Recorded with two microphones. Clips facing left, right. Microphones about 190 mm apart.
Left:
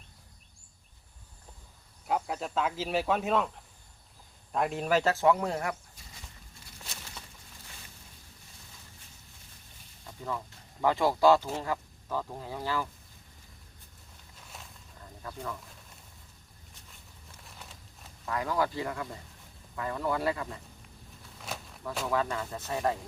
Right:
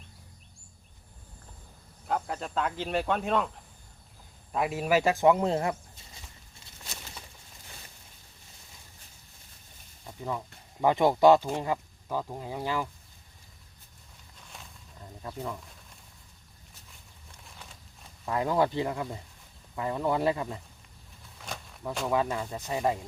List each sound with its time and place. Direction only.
2.0 s speech: 5° left (ahead or behind)
4.5 s speech: 5° right (ahead or behind); by 5.7 s 25° right (ahead or behind)
10.2 s speech: 15° right (ahead or behind)
14.5 s a sound: 5° left (ahead or behind)
15.2 s speech: 20° right (ahead or behind)
18.3 s speech: 25° right (ahead or behind)
21.3 s a sound: centre (ahead or behind)
22.0 s speech: 15° right (ahead or behind)